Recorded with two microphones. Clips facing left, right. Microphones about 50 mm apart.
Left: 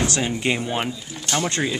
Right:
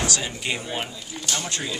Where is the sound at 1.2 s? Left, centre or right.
Left.